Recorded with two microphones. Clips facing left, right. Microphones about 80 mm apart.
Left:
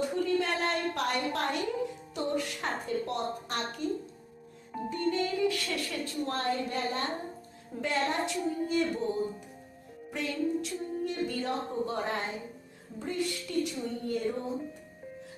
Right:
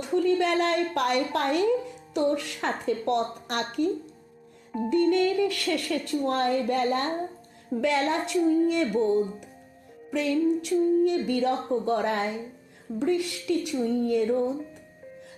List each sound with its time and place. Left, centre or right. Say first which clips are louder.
0.1 s a woman's voice: right 6 dB; right
4.9 s music: right 8 dB; right
7.8 s music: right 5 dB; right
10.1 s music: right 7 dB; right
13.0 s music: right 7 dB; right